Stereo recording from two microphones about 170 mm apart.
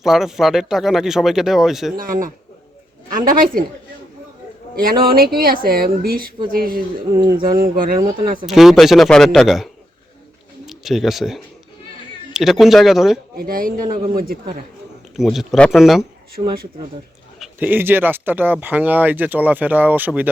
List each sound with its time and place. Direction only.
0.0 s speech: centre (ahead or behind)
2.0 s a woman's voice: 55° right (ahead or behind)
4.8 s speech: 60° right (ahead or behind)
8.4 s speech: centre (ahead or behind)
10.7 s speech: centre (ahead or behind)
13.3 s speech: 60° right (ahead or behind)
15.1 s speech: centre (ahead or behind)
16.4 s speech: 40° right (ahead or behind)
17.4 s speech: 10° right (ahead or behind)